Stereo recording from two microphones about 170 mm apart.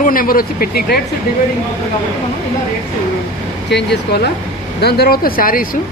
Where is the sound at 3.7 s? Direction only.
85° left.